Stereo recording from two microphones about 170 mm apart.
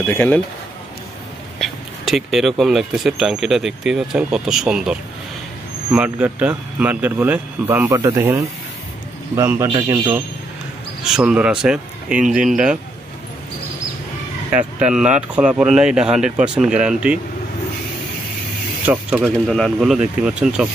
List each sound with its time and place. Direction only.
0.0 s speech: 10° left (ahead or behind)
1.6 s speech: centre (ahead or behind); by 10.2 s 15° right (ahead or behind)
11.1 s speech: 5° right (ahead or behind)
14.5 s speech: 10° right (ahead or behind)
18.9 s speech: 5° right (ahead or behind)